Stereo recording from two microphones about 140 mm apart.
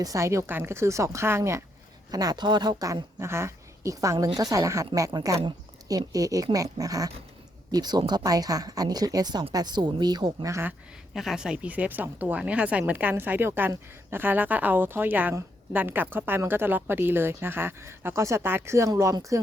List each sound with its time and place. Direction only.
0.0 s speech: 25° right (ahead or behind)
11.1 s speech: 5° right (ahead or behind); by 19.4 s 20° right (ahead or behind)